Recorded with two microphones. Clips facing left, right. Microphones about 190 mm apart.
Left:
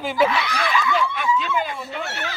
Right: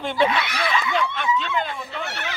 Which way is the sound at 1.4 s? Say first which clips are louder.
Left 1 dB; 10° left (ahead or behind).